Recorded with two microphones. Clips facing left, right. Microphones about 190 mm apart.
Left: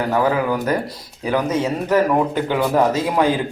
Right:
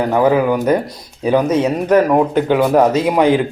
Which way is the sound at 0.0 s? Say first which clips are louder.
Right 5 dB; 20° right (ahead or behind).